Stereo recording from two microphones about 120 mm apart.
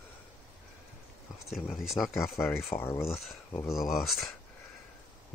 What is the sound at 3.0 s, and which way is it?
Speech, centre (ahead or behind).